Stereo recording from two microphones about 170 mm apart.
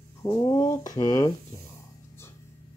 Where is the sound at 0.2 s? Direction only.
20° left (ahead or behind).